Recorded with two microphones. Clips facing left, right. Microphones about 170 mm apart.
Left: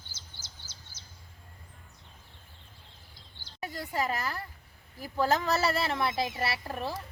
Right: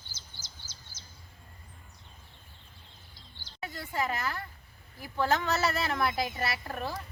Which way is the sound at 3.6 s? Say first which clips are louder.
Left 1 dB; 40° left (ahead or behind).